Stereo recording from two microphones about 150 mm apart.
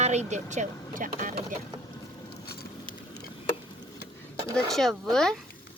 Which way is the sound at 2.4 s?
90° left.